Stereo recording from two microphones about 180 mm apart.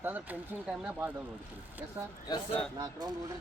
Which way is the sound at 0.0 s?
10° right (ahead or behind).